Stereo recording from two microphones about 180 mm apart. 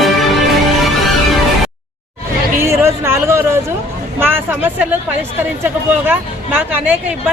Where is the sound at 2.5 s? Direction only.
15° right (ahead or behind).